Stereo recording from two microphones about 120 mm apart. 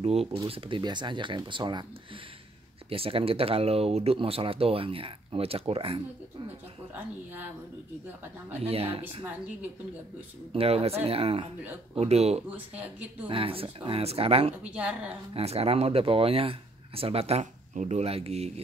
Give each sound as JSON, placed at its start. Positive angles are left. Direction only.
{"t": 0.0, "sound": "speech", "side_deg": -60}
{"t": 0.5, "sound": "speech", "side_deg": -45}
{"t": 2.9, "sound": "speech", "side_deg": -50}
{"t": 8.6, "sound": "speech", "side_deg": -55}
{"t": 10.5, "sound": "speech", "side_deg": -55}
{"t": 12.4, "sound": "speech", "side_deg": -15}
{"t": 13.3, "sound": "speech", "side_deg": -50}
{"t": 14.6, "sound": "speech", "side_deg": -10}
{"t": 15.3, "sound": "speech", "side_deg": -55}